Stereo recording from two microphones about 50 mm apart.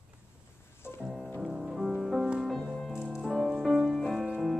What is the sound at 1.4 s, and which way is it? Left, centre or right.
Music, centre.